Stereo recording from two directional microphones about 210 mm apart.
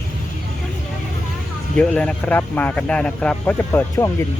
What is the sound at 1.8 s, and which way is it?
Speech, 5° left (ahead or behind).